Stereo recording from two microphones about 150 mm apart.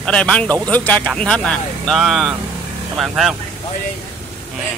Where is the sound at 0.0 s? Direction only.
5° left (ahead or behind).